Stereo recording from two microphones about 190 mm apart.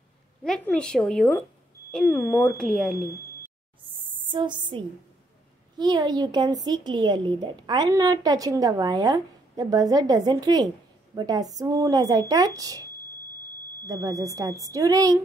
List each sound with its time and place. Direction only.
0.4 s a woman's voice: 5° left (ahead or behind)
4.0 s music: 25° right (ahead or behind)
5.8 s a woman's voice: 20° right (ahead or behind)
13.8 s a woman's voice: 15° right (ahead or behind)